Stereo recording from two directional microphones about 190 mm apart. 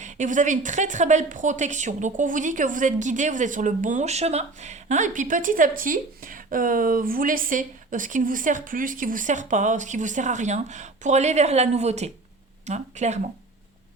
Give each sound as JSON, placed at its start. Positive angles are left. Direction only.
{"t": 0.0, "sound": "a woman's voice", "side_deg": -40}